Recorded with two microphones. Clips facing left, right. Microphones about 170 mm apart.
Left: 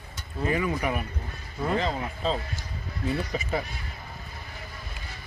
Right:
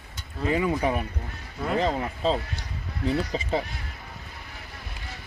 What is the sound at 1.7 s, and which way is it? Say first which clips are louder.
Speech: right 3 dB; 35° right (ahead or behind).